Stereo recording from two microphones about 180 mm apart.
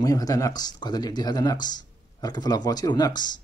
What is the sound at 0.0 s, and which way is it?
Speech, 20° left (ahead or behind).